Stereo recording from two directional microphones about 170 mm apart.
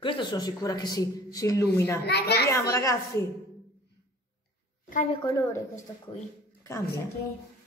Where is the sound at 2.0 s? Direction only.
75° left (ahead or behind).